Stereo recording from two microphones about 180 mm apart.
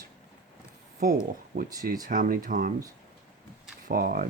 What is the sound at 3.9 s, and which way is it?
Speech, 55° right (ahead or behind).